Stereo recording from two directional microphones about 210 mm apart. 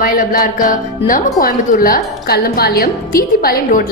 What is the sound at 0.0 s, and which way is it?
Speech, 40° left (ahead or behind).